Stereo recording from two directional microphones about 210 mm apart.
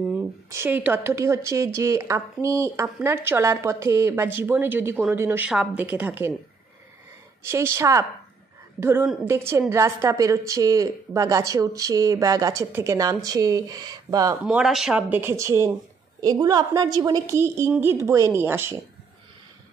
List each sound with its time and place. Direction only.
0.0 s speech: 10° right (ahead or behind)
7.4 s a woman's voice: 15° right (ahead or behind)
14.4 s speech: 5° right (ahead or behind)